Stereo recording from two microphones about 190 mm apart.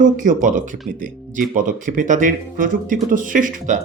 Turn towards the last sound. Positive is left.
turn(degrees=-45)  # may be behind; listen again after turning